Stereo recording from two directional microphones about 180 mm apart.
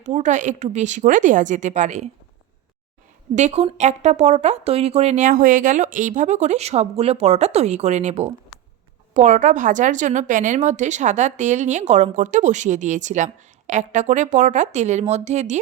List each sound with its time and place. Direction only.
0.0 s a woman's voice: 40° right (ahead or behind)
3.3 s speech: 40° right (ahead or behind)